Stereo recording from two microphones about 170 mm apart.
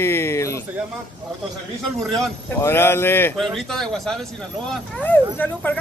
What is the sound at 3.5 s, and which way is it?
Speech, centre (ahead or behind).